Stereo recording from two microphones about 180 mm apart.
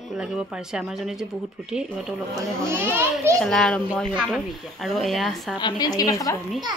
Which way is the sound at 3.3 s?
5° left (ahead or behind).